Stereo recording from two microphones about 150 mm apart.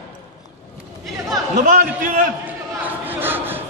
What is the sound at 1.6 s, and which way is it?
Speech, 65° right (ahead or behind).